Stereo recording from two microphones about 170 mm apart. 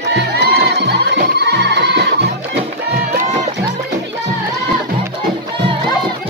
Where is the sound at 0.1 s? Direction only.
80° right.